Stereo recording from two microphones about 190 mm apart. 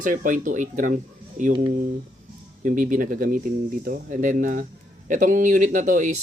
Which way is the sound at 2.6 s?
45° right (ahead or behind).